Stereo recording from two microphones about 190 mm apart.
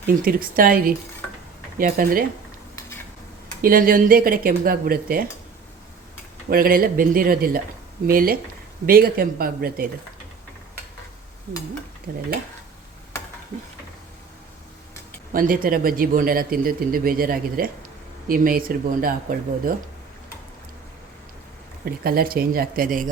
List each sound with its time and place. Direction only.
0.0 s speech: 50° right (ahead or behind)
3.6 s speech: 50° right (ahead or behind)
6.5 s speech: 50° right (ahead or behind)
12.1 s speech: 45° right (ahead or behind)
15.3 s speech: 45° right (ahead or behind)
21.8 s speech: 50° right (ahead or behind)